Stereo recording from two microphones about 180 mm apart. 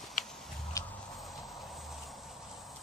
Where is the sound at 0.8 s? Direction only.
20° left (ahead or behind).